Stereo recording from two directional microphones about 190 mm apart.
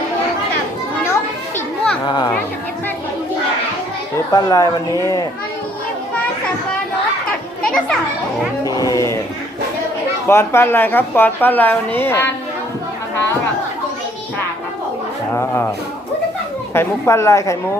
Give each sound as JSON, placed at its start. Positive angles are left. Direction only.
{"t": 1.5, "sound": "children playing", "side_deg": 5}
{"t": 2.0, "sound": "speech", "side_deg": 25}
{"t": 4.3, "sound": "a woman's voice", "side_deg": 20}
{"t": 7.6, "sound": "children playing", "side_deg": 5}
{"t": 8.6, "sound": "speech", "side_deg": 20}
{"t": 10.2, "sound": "a woman's voice", "side_deg": 15}
{"t": 15.4, "sound": "a woman's voice", "side_deg": 15}
{"t": 16.7, "sound": "a woman's voice", "side_deg": 15}